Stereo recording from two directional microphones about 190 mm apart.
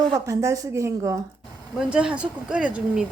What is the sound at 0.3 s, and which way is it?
A woman's voice, 15° right (ahead or behind).